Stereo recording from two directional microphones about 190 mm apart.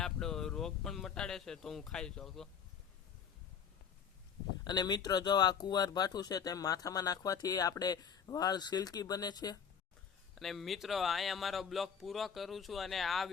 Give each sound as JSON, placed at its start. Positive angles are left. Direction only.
{"t": 0.0, "sound": "speech", "side_deg": 5}
{"t": 4.6, "sound": "speech", "side_deg": 20}
{"t": 10.3, "sound": "a man's voice", "side_deg": 0}